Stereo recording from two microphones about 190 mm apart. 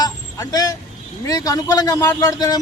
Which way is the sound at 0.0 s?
20° left (ahead or behind).